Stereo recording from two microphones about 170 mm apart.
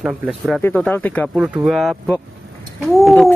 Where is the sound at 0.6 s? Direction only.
10° left (ahead or behind).